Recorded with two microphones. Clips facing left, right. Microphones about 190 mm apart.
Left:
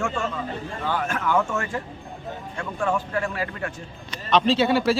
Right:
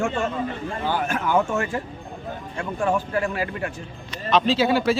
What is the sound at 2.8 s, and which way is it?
Speech, 15° right (ahead or behind).